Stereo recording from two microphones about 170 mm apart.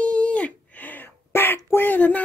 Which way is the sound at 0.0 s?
5° left (ahead or behind).